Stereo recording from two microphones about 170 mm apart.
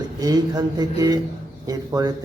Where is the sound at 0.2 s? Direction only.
25° right (ahead or behind).